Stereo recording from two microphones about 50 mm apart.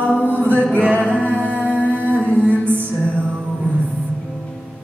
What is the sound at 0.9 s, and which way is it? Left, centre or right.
Music, left.